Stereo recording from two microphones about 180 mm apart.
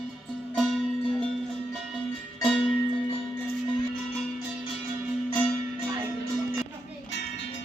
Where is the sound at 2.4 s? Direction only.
Centre (ahead or behind).